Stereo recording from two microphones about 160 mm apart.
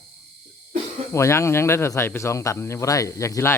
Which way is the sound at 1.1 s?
15° left (ahead or behind).